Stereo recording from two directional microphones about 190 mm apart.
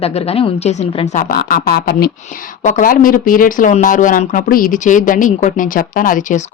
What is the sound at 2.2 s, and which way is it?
Speech, 40° left (ahead or behind).